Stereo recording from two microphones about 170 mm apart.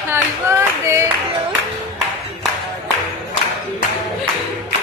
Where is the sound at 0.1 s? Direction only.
15° right (ahead or behind).